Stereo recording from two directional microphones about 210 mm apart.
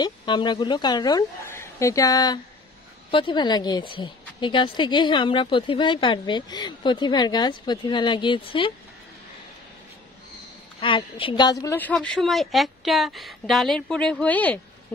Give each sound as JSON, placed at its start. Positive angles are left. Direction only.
{"t": 0.0, "sound": "a woman's voice", "side_deg": 20}
{"t": 10.8, "sound": "a woman's voice", "side_deg": 25}